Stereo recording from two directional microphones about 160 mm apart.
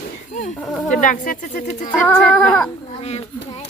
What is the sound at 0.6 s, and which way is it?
Speech, 5° left (ahead or behind).